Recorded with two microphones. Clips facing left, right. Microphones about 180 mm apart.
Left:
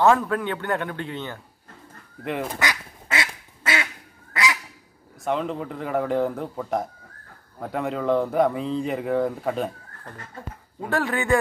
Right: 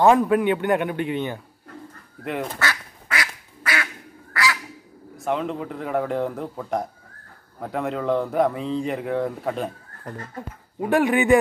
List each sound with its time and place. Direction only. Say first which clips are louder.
0.0 s a man's voice: right 3 dB; 15° right (ahead or behind)
2.2 s speech: even; centre (ahead or behind)
2.5 s quack: even; 15° left (ahead or behind)
4.3 s goose: right 1 dB; 20° left (ahead or behind)
5.2 s speech: even; centre (ahead or behind)
10.8 s a man's voice: right 6 dB; 15° right (ahead or behind)